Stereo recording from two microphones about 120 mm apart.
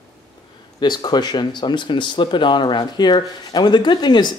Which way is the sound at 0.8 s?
35° left (ahead or behind).